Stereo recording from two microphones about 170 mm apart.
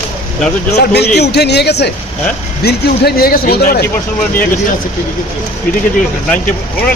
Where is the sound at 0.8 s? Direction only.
75° left (ahead or behind).